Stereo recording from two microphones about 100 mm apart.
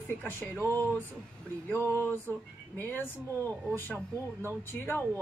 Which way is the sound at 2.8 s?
20° left (ahead or behind).